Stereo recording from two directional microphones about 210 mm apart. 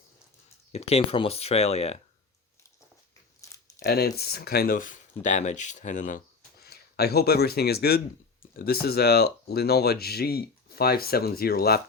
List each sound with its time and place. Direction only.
0.7 s speech: 30° left (ahead or behind)
3.5 s crumpling: 15° left (ahead or behind)
3.8 s speech: 50° left (ahead or behind)